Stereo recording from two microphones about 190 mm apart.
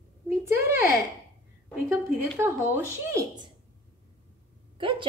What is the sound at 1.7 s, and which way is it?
Speech, 10° right (ahead or behind).